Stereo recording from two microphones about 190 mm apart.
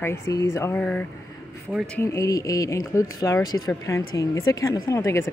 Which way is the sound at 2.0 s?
15° left (ahead or behind).